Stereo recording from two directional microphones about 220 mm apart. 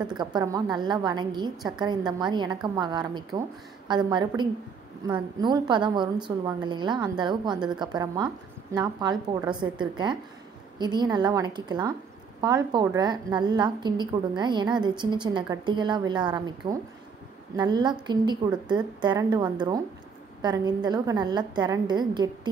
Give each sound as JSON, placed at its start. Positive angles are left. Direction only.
{"t": 0.2, "sound": "a woman's voice", "side_deg": -20}